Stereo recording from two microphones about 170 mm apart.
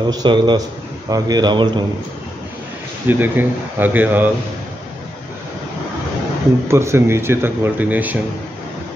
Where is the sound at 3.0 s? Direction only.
10° right (ahead or behind).